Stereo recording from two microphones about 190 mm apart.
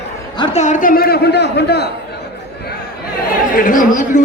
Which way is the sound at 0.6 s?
45° left (ahead or behind).